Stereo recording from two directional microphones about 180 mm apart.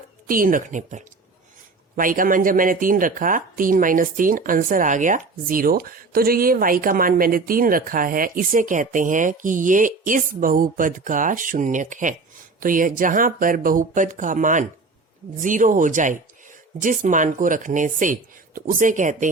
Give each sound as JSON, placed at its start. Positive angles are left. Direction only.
{"t": 0.3, "sound": "speech", "side_deg": -50}